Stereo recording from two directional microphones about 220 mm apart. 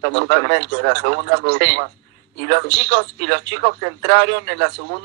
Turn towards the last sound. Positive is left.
turn(degrees=-50)  # may be behind; listen again after turning